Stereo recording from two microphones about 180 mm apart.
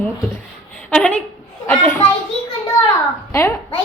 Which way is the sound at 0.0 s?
10° left (ahead or behind).